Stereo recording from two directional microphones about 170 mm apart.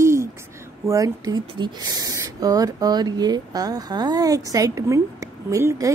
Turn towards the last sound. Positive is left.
turn(degrees=-20)  # may be behind; listen again after turning